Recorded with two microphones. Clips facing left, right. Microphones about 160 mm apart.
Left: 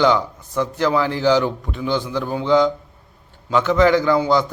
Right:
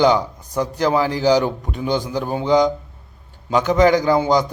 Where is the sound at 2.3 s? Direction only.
15° right (ahead or behind).